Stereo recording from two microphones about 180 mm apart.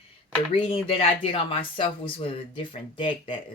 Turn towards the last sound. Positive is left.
turn(degrees=30)  # may be behind; listen again after turning